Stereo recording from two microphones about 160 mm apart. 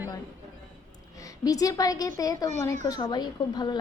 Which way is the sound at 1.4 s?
20° left (ahead or behind).